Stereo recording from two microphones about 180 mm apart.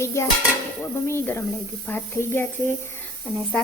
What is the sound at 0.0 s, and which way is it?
Speech, 15° left (ahead or behind).